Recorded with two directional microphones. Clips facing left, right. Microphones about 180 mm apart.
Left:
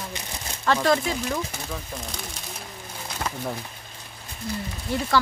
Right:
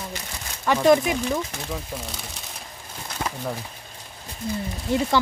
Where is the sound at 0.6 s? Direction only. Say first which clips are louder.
Right 4 dB; 15° right (ahead or behind).